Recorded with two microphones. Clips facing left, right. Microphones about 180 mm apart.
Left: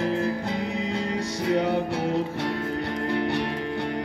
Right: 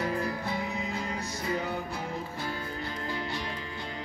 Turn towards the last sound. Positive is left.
turn(degrees=65)  # may be behind; listen again after turning